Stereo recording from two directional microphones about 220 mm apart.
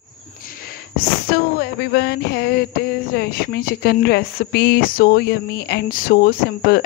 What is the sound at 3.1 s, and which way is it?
Speech, 45° left (ahead or behind).